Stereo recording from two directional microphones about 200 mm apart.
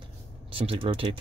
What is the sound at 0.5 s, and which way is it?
Speech, 25° right (ahead or behind).